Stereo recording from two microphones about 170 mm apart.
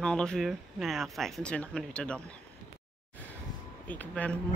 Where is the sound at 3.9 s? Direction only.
10° left (ahead or behind).